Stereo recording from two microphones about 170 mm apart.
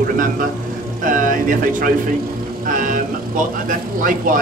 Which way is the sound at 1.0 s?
50° right (ahead or behind).